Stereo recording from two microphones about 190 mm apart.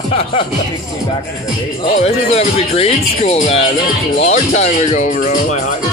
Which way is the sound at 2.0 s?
35° left (ahead or behind).